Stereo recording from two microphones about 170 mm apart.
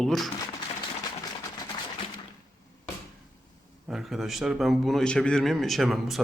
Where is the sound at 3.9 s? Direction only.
Centre (ahead or behind).